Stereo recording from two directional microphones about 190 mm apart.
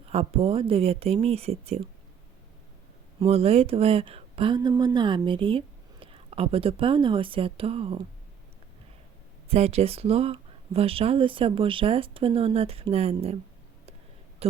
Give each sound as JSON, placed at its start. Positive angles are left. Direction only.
{"t": 0.1, "sound": "speech", "side_deg": -30}
{"t": 3.2, "sound": "speech", "side_deg": -30}
{"t": 9.5, "sound": "speech", "side_deg": -30}